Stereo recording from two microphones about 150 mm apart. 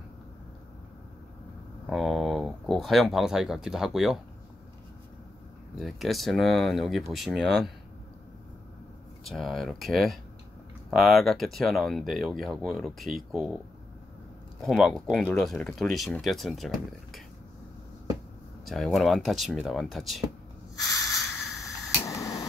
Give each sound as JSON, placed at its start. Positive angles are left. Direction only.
{"t": 1.9, "sound": "speech", "side_deg": 0}
{"t": 5.8, "sound": "speech", "side_deg": 0}
{"t": 9.2, "sound": "speech", "side_deg": 0}
{"t": 14.6, "sound": "speech", "side_deg": 0}
{"t": 18.7, "sound": "speech", "side_deg": 0}
{"t": 20.8, "sound": "a sound", "side_deg": 20}